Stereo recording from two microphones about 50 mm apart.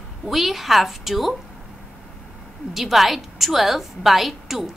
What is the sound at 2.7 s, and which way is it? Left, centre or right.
A woman's voice, centre.